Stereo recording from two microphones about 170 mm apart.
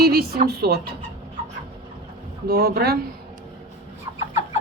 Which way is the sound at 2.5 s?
65° right (ahead or behind).